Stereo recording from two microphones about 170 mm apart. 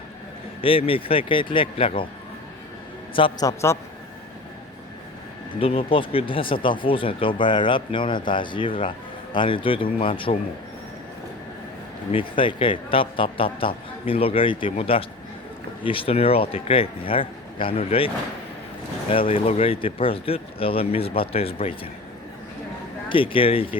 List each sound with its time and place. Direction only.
0.6 s speech: 30° left (ahead or behind)
3.2 s speech: 30° left (ahead or behind)
5.5 s speech: 35° left (ahead or behind)
12.4 s speech: 30° left (ahead or behind)
19.1 s speech: 30° left (ahead or behind)
23.0 s speech: 30° left (ahead or behind)